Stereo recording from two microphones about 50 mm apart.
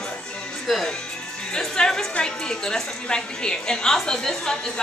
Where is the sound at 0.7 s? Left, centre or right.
Centre.